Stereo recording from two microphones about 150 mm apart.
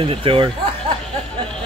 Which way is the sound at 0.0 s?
35° right (ahead or behind).